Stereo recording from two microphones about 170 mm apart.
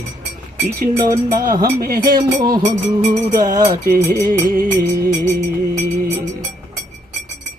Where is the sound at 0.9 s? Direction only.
20° right (ahead or behind).